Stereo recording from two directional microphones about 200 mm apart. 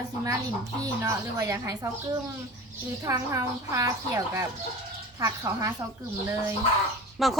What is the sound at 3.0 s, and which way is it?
Speech, 15° right (ahead or behind).